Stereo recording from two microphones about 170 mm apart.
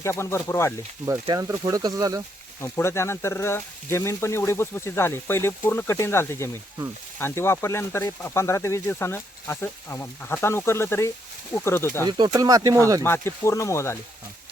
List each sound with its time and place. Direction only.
0.0 s speech: 15° left (ahead or behind)
1.0 s speech: 20° right (ahead or behind)
2.6 s speech: 15° left (ahead or behind)
12.0 s speech: 25° right (ahead or behind)
13.0 s speech: 15° left (ahead or behind)